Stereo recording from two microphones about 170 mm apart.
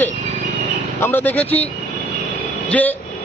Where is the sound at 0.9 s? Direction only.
15° left (ahead or behind).